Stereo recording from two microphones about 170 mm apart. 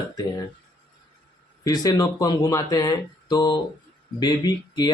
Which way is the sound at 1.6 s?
20° left (ahead or behind).